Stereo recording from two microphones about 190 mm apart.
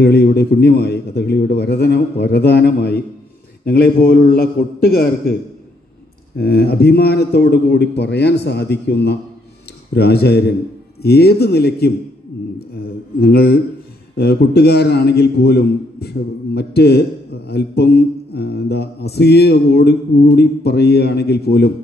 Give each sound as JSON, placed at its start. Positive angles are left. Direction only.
{"t": 0.0, "sound": "mantra", "side_deg": 60}
{"t": 4.3, "sound": "a man's voice", "side_deg": 55}
{"t": 6.3, "sound": "mantra", "side_deg": 55}